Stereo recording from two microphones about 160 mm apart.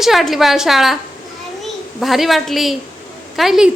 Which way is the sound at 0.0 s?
Centre (ahead or behind).